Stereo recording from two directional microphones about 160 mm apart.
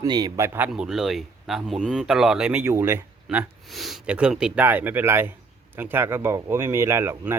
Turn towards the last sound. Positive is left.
turn(degrees=-15)  # may be behind; listen again after turning